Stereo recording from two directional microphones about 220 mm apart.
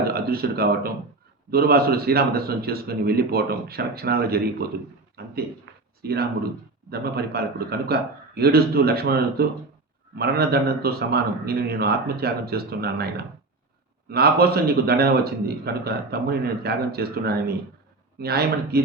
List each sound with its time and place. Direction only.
0.0 s a man's voice: 45° right (ahead or behind)